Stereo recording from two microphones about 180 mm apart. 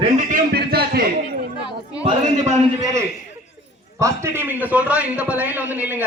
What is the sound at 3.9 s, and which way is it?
A man's voice, 15° right (ahead or behind).